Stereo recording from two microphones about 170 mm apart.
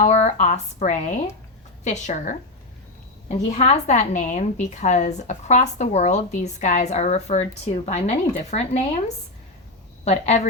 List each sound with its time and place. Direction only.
0.0 s a woman's voice: 45° left (ahead or behind)
10.0 s a woman's voice: 40° left (ahead or behind)